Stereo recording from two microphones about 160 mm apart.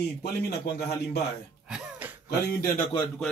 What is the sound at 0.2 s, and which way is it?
A man's voice, 90° left.